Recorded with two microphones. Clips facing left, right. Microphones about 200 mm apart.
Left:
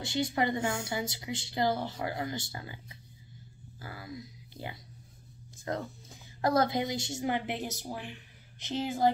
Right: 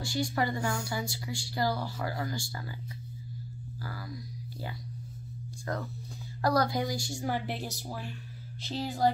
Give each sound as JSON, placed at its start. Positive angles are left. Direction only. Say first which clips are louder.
{"t": 0.0, "sound": "a woman's voice", "louder": "left 1 dB", "side_deg": 20}
{"t": 3.8, "sound": "a sound", "louder": "right 1 dB", "side_deg": 20}
{"t": 5.7, "sound": "a woman's voice", "louder": "left 1 dB", "side_deg": 20}